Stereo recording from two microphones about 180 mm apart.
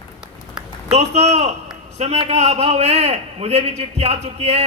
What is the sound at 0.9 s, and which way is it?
A man's voice, 35° right (ahead or behind).